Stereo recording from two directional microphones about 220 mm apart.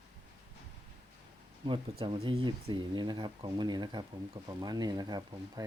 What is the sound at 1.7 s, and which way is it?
Speech, 20° right (ahead or behind).